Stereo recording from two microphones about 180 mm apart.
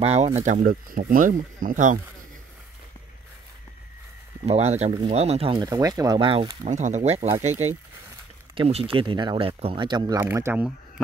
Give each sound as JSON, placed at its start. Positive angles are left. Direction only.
{"t": 0.0, "sound": "speech", "side_deg": -35}
{"t": 0.4, "sound": "speech", "side_deg": -45}
{"t": 4.5, "sound": "speech", "side_deg": -35}
{"t": 5.7, "sound": "speech", "side_deg": -20}
{"t": 6.6, "sound": "speech", "side_deg": -40}
{"t": 10.2, "sound": "speech", "side_deg": -10}